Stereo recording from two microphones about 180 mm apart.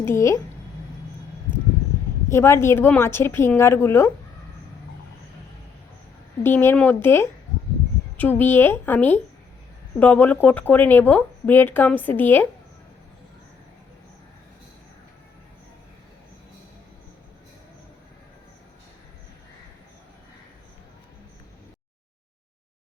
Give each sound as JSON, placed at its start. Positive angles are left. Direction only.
{"t": 0.0, "sound": "speech", "side_deg": 15}
{"t": 2.3, "sound": "speech", "side_deg": 15}
{"t": 6.4, "sound": "speech", "side_deg": 10}